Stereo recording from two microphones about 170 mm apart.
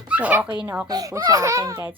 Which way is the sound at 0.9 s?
20° right (ahead or behind).